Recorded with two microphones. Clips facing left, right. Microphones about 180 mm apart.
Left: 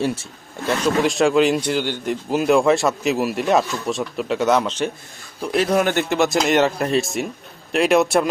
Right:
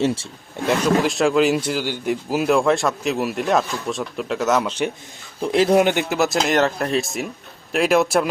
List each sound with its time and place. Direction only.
1.0 s speech: centre (ahead or behind)
5.4 s a man's voice: 25° right (ahead or behind)
5.7 s speech: 15° right (ahead or behind)